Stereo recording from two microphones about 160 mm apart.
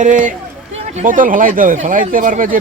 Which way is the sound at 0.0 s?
55° right (ahead or behind).